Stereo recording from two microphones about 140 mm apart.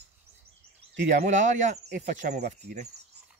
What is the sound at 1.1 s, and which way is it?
Speech, 60° right (ahead or behind).